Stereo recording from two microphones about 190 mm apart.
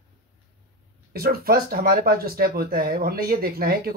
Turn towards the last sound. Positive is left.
turn(degrees=-50)  # may be behind; listen again after turning